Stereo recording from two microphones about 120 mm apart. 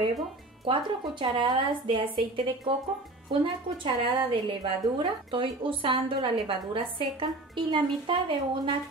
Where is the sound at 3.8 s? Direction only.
40° right (ahead or behind).